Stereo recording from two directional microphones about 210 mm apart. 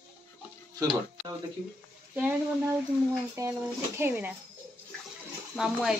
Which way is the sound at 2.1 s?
5° right (ahead or behind).